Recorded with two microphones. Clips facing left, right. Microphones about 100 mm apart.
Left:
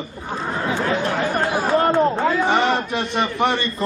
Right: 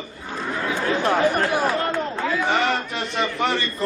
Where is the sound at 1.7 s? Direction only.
35° left (ahead or behind).